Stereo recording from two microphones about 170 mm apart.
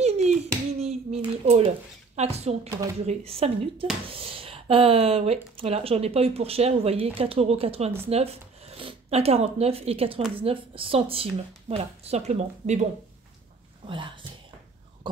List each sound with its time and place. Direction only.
0.0 s a sound: 40° right (ahead or behind)
2.1 s speech: 40° right (ahead or behind)
13.8 s speech: 30° right (ahead or behind)